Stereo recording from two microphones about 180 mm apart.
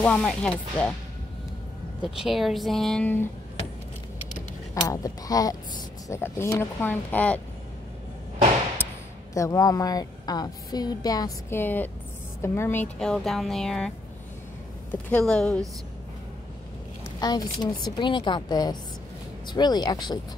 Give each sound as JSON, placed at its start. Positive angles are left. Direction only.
{"t": 0.0, "sound": "speech", "side_deg": 5}
{"t": 2.0, "sound": "speech", "side_deg": 0}
{"t": 4.8, "sound": "a woman's voice", "side_deg": 20}
{"t": 8.8, "sound": "a sound", "side_deg": 10}
{"t": 9.3, "sound": "a woman's voice", "side_deg": 20}
{"t": 17.2, "sound": "a woman's voice", "side_deg": 20}